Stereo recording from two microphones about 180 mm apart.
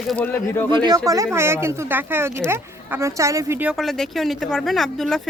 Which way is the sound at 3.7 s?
Centre (ahead or behind).